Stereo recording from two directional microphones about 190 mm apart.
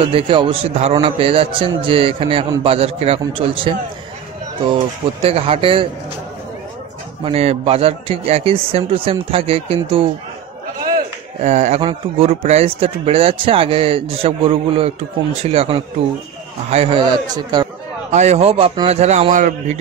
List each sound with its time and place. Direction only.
0.0 s speech: 25° right (ahead or behind)
7.2 s a man's voice: 30° right (ahead or behind)
11.4 s a man's voice: 35° right (ahead or behind); by 17.6 s 20° right (ahead or behind)
18.1 s a man's voice: 35° right (ahead or behind)